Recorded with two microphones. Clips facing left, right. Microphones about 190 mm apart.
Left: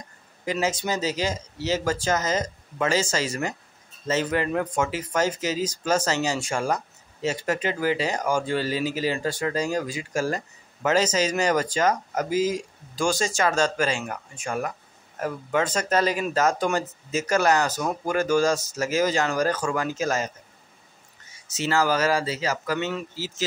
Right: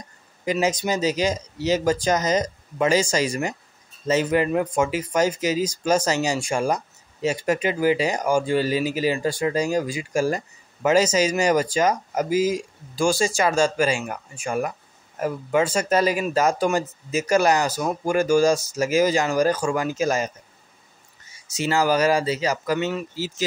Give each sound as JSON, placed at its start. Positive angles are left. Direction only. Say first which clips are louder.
{"t": 0.5, "sound": "speech", "louder": "right 3 dB", "side_deg": -15}
{"t": 21.5, "sound": "speech", "louder": "right 2 dB", "side_deg": -15}